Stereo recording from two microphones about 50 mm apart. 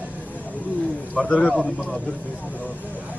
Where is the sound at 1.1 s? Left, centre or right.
Left.